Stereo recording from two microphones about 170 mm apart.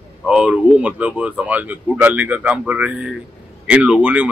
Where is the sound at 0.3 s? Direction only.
5° right (ahead or behind).